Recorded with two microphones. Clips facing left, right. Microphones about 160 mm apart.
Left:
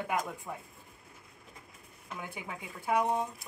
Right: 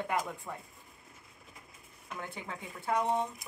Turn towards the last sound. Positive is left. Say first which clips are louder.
# left 1 dB
turn(degrees=10)  # may be behind; listen again after turning